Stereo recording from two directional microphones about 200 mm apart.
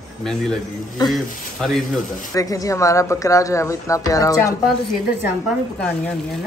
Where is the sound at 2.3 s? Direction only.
15° left (ahead or behind).